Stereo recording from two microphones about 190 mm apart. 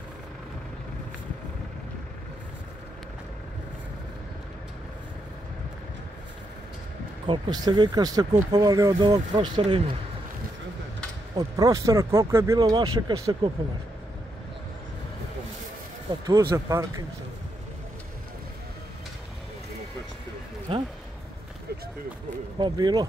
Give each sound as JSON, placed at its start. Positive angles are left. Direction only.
{"t": 7.2, "sound": "speech", "side_deg": -25}
{"t": 11.3, "sound": "speech", "side_deg": -20}
{"t": 16.3, "sound": "speech", "side_deg": -15}
{"t": 20.7, "sound": "speech", "side_deg": -30}
{"t": 22.6, "sound": "speech", "side_deg": -20}